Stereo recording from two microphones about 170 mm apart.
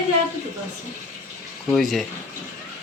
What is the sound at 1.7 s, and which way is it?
Speech, centre (ahead or behind).